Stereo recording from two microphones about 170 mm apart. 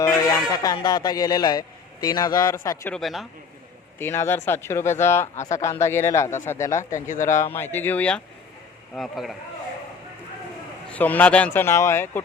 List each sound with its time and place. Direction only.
0.0 s speech: 20° left (ahead or behind)
2.9 s speech: centre (ahead or behind)
3.9 s speech: 15° left (ahead or behind)
10.9 s speech: 10° left (ahead or behind)